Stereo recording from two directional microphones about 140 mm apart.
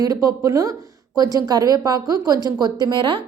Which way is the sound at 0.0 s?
25° right (ahead or behind).